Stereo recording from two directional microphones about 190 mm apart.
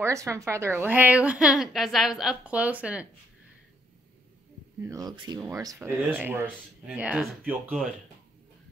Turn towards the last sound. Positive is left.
turn(degrees=-5)  # may be behind; listen again after turning